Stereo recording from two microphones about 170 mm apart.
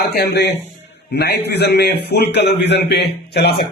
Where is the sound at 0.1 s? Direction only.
70° left (ahead or behind).